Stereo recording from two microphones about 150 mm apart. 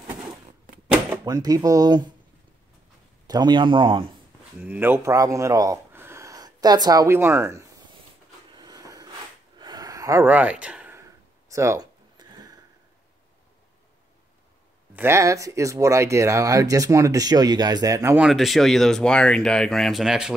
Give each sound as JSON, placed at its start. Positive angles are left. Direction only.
{"t": 1.2, "sound": "speech", "side_deg": -25}
{"t": 3.3, "sound": "speech", "side_deg": -30}
{"t": 4.6, "sound": "speech", "side_deg": -10}
{"t": 8.5, "sound": "a sound", "side_deg": -25}
{"t": 10.2, "sound": "speech", "side_deg": -10}
{"t": 11.0, "sound": "a sound", "side_deg": -20}
{"t": 15.0, "sound": "speech", "side_deg": -20}
{"t": 18.1, "sound": "speech", "side_deg": -5}